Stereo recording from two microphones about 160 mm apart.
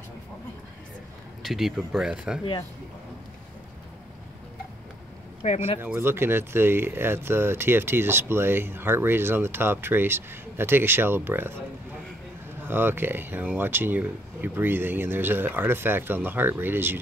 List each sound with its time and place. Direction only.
1.4 s speech: centre (ahead or behind)
5.4 s speech: 45° left (ahead or behind)
5.8 s speech: 15° right (ahead or behind)
12.6 s speech: 15° right (ahead or behind)